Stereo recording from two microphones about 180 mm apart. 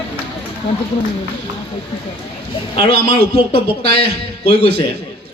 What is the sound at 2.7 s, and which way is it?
Speech, 30° left (ahead or behind).